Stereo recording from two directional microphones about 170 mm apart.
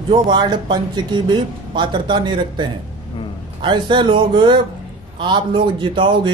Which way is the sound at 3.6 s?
30° right (ahead or behind).